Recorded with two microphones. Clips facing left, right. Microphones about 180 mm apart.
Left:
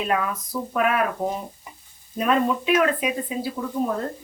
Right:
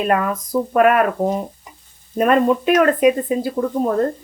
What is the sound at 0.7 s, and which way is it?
Speech, 55° right (ahead or behind).